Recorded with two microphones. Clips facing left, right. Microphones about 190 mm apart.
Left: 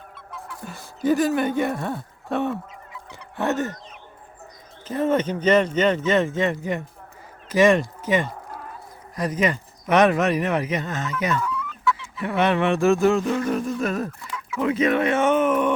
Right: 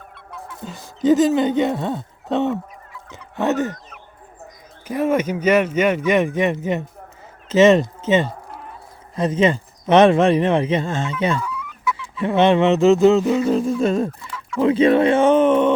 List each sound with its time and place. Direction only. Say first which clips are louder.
0.6 s speech: right 5 dB; 20° right (ahead or behind)
3.1 s fowl: right 4 dB; 20° right (ahead or behind)
4.9 s speech: right 2 dB; 10° right (ahead or behind)
7.4 s a sound: right 4 dB; 25° right (ahead or behind)
9.1 s speech: right 5 dB; 25° right (ahead or behind)
11.3 s fowl: left 1 dB; 10° right (ahead or behind)
12.1 s speech: right 7 dB; 25° right (ahead or behind)
13.5 s speech: right 6 dB; 25° right (ahead or behind)